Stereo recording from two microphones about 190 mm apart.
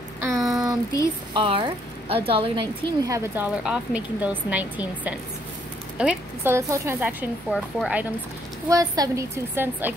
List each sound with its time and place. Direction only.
0.2 s a sound: 15° right (ahead or behind)
1.3 s speech: 25° right (ahead or behind); by 8.1 s 5° right (ahead or behind)
8.6 s speech: 20° right (ahead or behind)